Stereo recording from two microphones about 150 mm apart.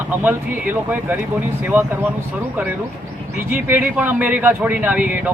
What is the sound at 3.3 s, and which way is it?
A man's voice, 15° right (ahead or behind).